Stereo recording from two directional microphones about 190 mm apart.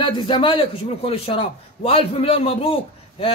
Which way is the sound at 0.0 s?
25° left (ahead or behind).